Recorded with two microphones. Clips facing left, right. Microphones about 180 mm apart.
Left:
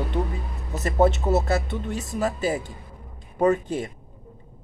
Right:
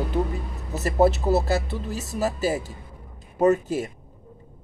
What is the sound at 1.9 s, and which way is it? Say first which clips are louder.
Speech: left 1 dB; 40° right (ahead or behind).